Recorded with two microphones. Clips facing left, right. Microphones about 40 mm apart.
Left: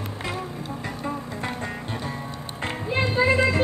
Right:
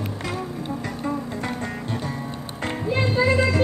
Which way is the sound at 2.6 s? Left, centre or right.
Centre.